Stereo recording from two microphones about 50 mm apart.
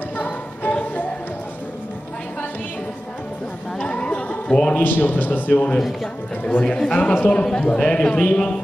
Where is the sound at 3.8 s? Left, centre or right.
Centre.